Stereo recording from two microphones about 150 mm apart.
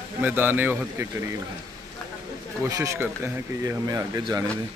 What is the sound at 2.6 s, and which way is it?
Speech, 20° right (ahead or behind).